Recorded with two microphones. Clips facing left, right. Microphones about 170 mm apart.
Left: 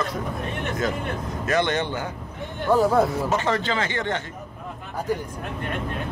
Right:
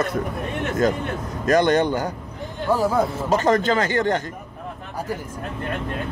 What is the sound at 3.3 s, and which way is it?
Speech, 40° right (ahead or behind).